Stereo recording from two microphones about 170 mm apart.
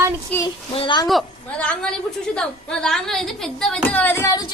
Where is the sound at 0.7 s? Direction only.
30° left (ahead or behind).